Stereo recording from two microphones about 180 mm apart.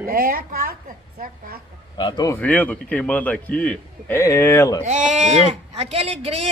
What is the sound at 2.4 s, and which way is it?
A man's voice, 10° left (ahead or behind).